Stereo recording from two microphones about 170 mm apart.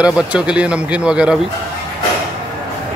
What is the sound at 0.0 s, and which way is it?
Speech, 5° right (ahead or behind).